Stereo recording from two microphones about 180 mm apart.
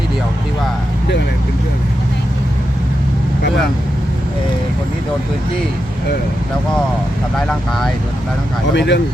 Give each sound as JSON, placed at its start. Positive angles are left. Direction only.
{"t": 7.3, "sound": "speech", "side_deg": 0}
{"t": 8.7, "sound": "speech", "side_deg": 75}